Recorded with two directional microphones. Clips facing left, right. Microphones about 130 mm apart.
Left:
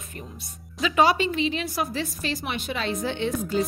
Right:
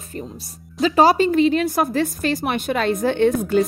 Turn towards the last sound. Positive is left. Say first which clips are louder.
# right 9 dB
turn(degrees=-60)  # may be behind; listen again after turning